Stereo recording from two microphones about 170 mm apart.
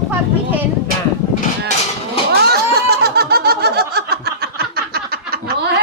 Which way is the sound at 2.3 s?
70° right (ahead or behind).